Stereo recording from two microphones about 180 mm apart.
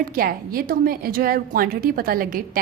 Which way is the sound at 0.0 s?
55° right (ahead or behind).